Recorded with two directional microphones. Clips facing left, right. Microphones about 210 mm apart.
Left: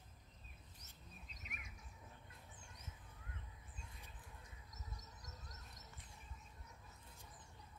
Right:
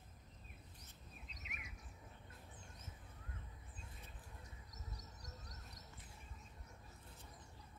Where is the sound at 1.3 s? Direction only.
50° left (ahead or behind).